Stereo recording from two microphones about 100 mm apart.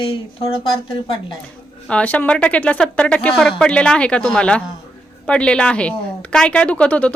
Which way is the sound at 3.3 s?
Centre (ahead or behind).